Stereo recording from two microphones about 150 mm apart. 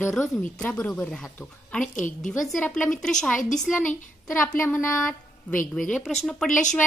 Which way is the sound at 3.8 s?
60° left (ahead or behind).